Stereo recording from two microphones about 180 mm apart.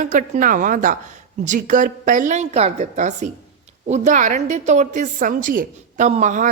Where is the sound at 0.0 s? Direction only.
45° right (ahead or behind).